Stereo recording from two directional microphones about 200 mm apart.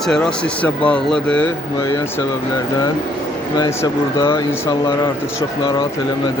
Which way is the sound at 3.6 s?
20° left (ahead or behind).